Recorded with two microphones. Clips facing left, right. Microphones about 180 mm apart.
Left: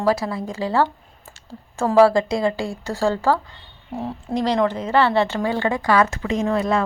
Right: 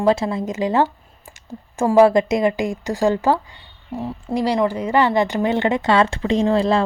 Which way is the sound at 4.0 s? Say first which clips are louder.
Right 1 dB; 5° right (ahead or behind).